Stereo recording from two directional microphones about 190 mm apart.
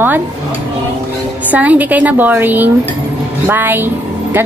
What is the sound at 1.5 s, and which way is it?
Speech, 10° right (ahead or behind).